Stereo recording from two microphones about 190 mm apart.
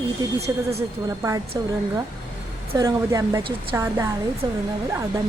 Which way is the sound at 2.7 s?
20° right (ahead or behind).